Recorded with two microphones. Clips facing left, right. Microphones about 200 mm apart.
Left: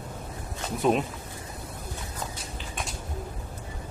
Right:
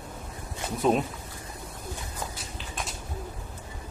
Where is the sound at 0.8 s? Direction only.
Centre (ahead or behind).